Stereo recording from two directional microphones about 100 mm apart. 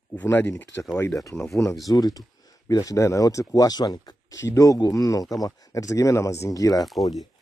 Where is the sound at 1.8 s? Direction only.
35° left (ahead or behind).